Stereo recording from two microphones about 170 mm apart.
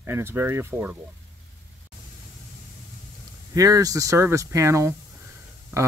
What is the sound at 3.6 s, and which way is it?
Speech, 20° right (ahead or behind).